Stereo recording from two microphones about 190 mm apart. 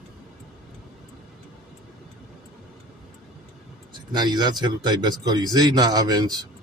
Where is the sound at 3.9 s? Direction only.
20° right (ahead or behind).